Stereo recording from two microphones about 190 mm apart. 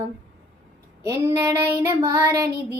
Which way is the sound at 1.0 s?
15° right (ahead or behind).